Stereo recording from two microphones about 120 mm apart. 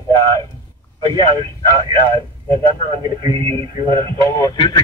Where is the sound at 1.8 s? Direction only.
40° right (ahead or behind).